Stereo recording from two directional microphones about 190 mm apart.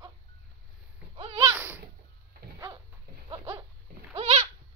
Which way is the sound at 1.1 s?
30° right (ahead or behind).